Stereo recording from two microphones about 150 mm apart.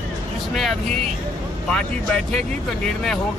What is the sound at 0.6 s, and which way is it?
Speech, centre (ahead or behind).